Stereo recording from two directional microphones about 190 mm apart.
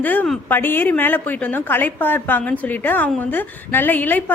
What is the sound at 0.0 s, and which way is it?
A woman's voice, 10° left (ahead or behind).